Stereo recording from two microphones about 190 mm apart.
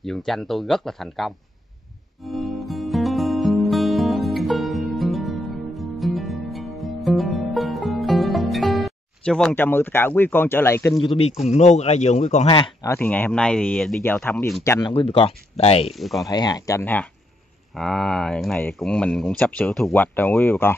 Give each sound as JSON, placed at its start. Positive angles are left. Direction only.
{"t": 0.0, "sound": "speech", "side_deg": 0}
{"t": 2.2, "sound": "music", "side_deg": 0}
{"t": 11.0, "sound": "a man's voice", "side_deg": 30}
{"t": 12.8, "sound": "speech", "side_deg": 10}
{"t": 15.9, "sound": "speech", "side_deg": 0}
{"t": 16.3, "sound": "speech", "side_deg": 20}